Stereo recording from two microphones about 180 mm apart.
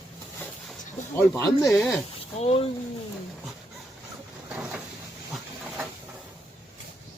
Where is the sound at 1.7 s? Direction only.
Centre (ahead or behind).